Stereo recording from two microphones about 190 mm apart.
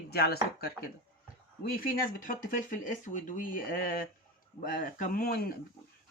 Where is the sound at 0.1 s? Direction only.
55° left (ahead or behind).